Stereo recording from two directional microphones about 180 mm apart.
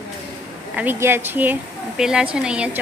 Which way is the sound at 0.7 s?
10° right (ahead or behind).